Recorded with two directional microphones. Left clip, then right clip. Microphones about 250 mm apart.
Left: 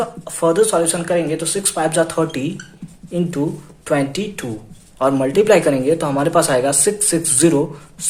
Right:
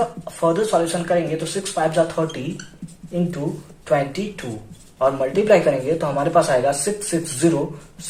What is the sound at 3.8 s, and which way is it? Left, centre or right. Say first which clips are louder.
A man's voice: left 1 dB; left.